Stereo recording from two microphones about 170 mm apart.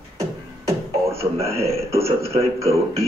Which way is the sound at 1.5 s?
35° right (ahead or behind).